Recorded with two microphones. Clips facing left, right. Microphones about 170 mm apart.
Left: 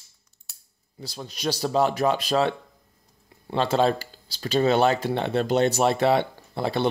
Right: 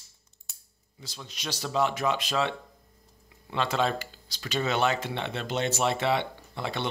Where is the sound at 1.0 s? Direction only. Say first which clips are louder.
Left 10 dB; 35° left (ahead or behind).